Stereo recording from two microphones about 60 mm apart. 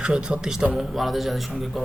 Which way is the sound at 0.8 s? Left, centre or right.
Centre.